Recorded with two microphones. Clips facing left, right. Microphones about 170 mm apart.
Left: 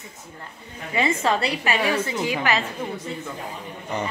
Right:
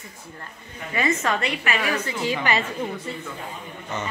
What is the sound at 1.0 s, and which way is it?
A woman's voice, 30° left (ahead or behind).